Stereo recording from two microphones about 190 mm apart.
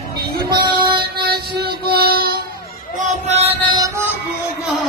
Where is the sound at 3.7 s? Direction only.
15° right (ahead or behind).